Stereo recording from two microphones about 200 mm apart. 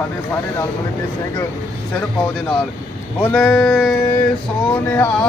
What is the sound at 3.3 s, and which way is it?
Speech, centre (ahead or behind).